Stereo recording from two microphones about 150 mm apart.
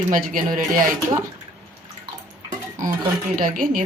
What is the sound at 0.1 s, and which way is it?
Speech, 65° right (ahead or behind).